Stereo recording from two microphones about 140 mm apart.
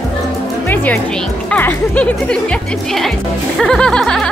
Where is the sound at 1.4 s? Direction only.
10° left (ahead or behind).